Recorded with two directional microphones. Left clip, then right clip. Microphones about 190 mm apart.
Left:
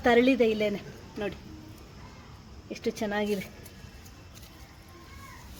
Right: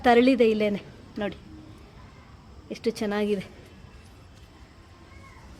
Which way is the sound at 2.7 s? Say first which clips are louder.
Right 3 dB; 25° right (ahead or behind).